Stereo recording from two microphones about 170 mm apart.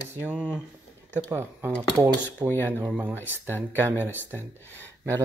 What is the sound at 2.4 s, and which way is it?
Speech, 10° left (ahead or behind).